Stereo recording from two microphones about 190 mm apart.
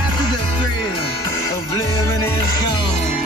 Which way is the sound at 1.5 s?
15° left (ahead or behind).